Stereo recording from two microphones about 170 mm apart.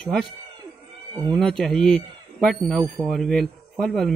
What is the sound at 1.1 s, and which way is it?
Speech, 25° right (ahead or behind).